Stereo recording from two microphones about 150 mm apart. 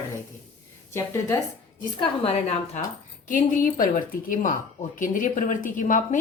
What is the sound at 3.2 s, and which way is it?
Speech, 60° left (ahead or behind).